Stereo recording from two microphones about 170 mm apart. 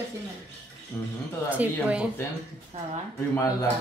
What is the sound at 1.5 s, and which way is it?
Speech, 10° right (ahead or behind).